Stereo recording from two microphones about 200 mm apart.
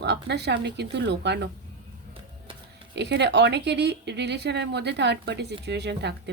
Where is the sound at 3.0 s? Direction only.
60° right (ahead or behind).